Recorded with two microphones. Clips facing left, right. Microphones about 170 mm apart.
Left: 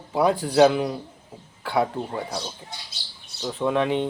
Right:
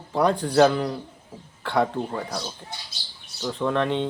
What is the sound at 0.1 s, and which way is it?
Speech, 5° left (ahead or behind).